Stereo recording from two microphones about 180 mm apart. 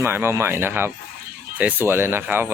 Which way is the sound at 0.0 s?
10° right (ahead or behind).